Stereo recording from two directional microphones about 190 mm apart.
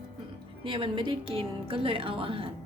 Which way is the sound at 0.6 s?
25° right (ahead or behind).